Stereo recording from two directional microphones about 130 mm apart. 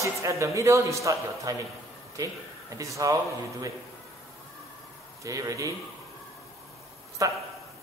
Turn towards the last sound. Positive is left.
turn(degrees=-25)  # may be behind; listen again after turning